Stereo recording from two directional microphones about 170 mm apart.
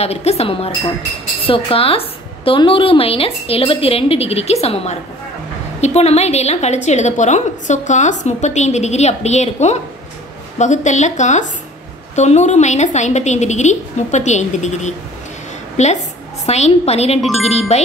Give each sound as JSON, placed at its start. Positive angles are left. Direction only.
{"t": 0.0, "sound": "a woman's voice", "side_deg": 40}